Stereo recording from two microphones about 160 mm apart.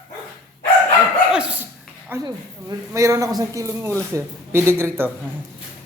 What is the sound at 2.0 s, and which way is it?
A woman's voice, 20° right (ahead or behind).